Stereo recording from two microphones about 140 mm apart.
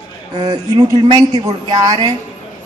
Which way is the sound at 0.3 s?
35° right (ahead or behind).